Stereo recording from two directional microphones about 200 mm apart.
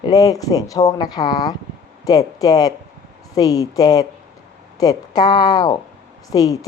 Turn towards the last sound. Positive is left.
turn(degrees=20)  # may be behind; listen again after turning